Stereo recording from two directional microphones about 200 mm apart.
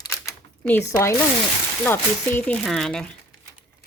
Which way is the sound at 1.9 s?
10° left (ahead or behind).